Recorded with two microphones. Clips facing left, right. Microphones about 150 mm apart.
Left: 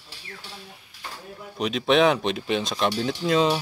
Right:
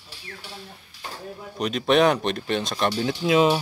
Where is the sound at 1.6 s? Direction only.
Centre (ahead or behind).